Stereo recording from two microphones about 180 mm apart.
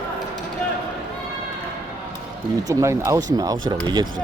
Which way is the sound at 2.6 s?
15° right (ahead or behind).